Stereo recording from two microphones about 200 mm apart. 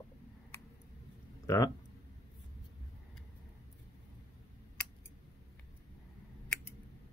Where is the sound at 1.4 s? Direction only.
15° left (ahead or behind).